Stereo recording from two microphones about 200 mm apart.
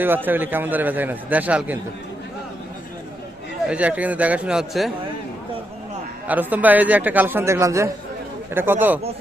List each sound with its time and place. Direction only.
0.3 s a man's voice: 10° right (ahead or behind)
3.7 s a man's voice: 5° right (ahead or behind)
6.2 s a man's voice: 10° right (ahead or behind)